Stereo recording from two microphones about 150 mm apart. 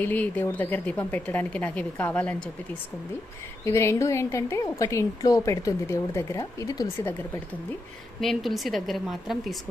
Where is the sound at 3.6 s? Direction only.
20° left (ahead or behind).